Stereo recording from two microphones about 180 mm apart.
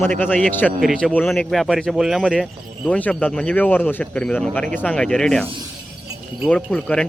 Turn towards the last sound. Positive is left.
turn(degrees=5)  # may be behind; listen again after turning